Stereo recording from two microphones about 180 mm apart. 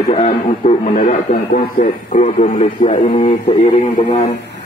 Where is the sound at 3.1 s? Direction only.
35° left (ahead or behind).